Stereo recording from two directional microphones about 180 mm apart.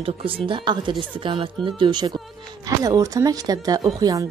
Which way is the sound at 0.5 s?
25° right (ahead or behind).